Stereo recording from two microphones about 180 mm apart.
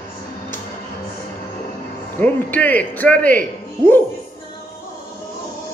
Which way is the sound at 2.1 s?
10° left (ahead or behind).